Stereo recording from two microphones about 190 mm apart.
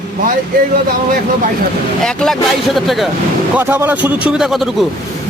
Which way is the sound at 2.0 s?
Centre (ahead or behind).